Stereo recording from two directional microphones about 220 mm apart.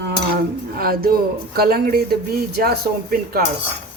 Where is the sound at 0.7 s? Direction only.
45° right (ahead or behind).